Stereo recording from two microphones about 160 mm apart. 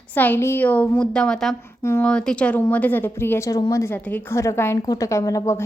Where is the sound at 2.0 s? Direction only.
5° left (ahead or behind).